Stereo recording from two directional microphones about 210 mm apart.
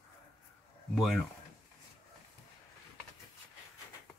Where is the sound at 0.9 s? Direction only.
Centre (ahead or behind).